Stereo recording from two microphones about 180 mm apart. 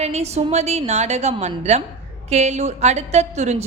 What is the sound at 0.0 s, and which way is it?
A woman's voice, 35° right (ahead or behind).